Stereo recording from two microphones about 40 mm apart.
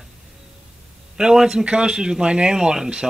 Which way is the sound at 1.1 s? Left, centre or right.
Centre.